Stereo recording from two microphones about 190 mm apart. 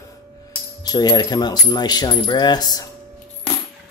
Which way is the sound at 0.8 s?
20° left (ahead or behind).